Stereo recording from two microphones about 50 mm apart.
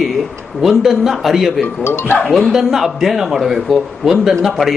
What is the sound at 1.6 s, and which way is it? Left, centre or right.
Speech, left.